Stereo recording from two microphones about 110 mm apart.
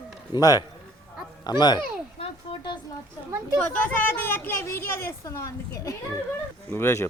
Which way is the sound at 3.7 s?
15° left (ahead or behind).